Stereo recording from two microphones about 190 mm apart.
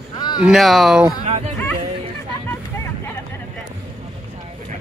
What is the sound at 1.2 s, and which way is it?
Speech, 30° right (ahead or behind).